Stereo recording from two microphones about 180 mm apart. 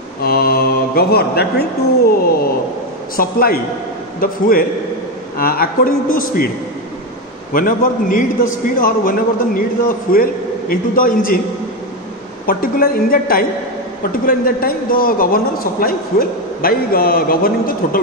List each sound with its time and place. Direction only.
0.2 s a man's voice: 60° left (ahead or behind)
7.5 s a man's voice: 50° left (ahead or behind)
12.4 s a man's voice: 55° left (ahead or behind)